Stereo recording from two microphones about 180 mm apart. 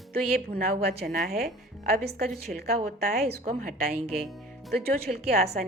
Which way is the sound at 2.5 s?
60° right (ahead or behind).